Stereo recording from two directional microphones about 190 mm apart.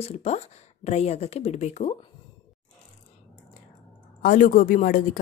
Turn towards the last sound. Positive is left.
turn(degrees=45)  # may be behind; listen again after turning